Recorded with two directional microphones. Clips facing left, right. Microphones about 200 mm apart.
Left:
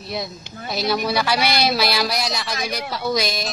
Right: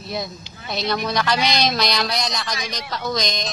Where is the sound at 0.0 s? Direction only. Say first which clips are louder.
Even; centre (ahead or behind).